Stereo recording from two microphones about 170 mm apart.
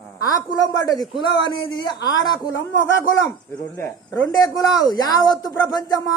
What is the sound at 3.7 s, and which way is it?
Speech, 15° left (ahead or behind).